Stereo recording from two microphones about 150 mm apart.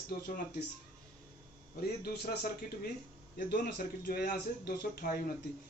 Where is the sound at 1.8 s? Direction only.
90° left.